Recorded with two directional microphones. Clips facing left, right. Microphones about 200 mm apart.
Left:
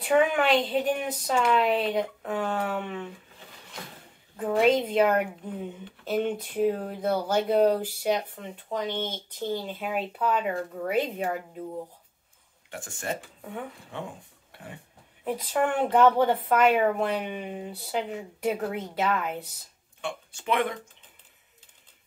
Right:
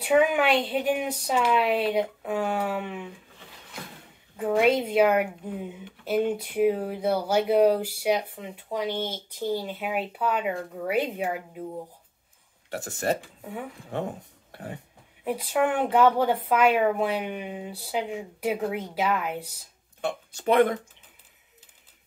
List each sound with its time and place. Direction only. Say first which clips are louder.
0.0 s speech: right 1 dB; 5° right (ahead or behind)
4.4 s speech: even; 5° right (ahead or behind)
12.7 s speech: right 6 dB; 40° right (ahead or behind)
13.4 s speech: right 1 dB; 5° right (ahead or behind)
13.9 s speech: right 7 dB; 40° right (ahead or behind)
14.5 s a sound: right 6 dB; 40° right (ahead or behind)
15.2 s speech: right 2 dB; 5° right (ahead or behind)
20.0 s speech: right 4 dB; 40° right (ahead or behind)